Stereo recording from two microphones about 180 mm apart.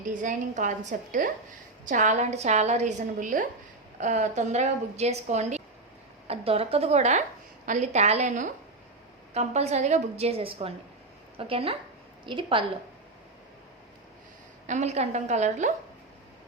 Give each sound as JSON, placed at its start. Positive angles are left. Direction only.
{"t": 0.0, "sound": "a woman's voice", "side_deg": -45}
{"t": 14.7, "sound": "a woman's voice", "side_deg": -40}